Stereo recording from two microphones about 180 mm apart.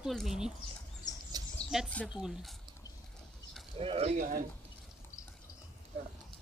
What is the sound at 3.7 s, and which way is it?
Speech, 35° right (ahead or behind).